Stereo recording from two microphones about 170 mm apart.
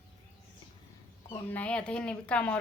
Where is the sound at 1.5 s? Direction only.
10° left (ahead or behind).